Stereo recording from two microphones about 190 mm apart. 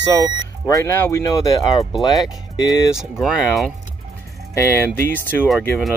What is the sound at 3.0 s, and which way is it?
Speech, centre (ahead or behind).